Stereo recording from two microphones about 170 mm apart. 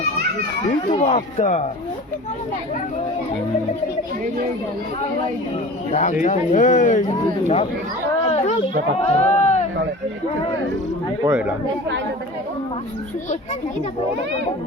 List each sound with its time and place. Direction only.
0.9 s speech: 40° left (ahead or behind)
5.9 s speech: 45° left (ahead or behind)
8.3 s children playing: 40° left (ahead or behind)
9.0 s speech: 40° left (ahead or behind)
11.3 s speech: 10° right (ahead or behind)